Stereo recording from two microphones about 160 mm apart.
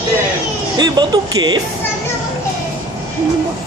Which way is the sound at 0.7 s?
25° right (ahead or behind).